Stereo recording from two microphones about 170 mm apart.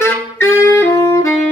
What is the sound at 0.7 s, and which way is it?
Saxophone, 15° left (ahead or behind).